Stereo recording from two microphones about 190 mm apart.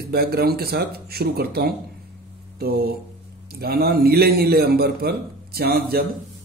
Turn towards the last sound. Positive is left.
turn(degrees=-55)  # may be behind; listen again after turning